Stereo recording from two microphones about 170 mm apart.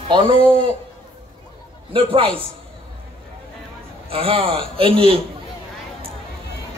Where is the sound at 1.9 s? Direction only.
30° right (ahead or behind).